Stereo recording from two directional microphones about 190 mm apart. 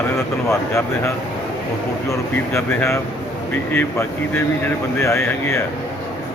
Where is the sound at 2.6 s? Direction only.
15° left (ahead or behind).